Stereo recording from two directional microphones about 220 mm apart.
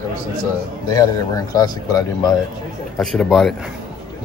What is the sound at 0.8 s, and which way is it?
Speech, 15° left (ahead or behind).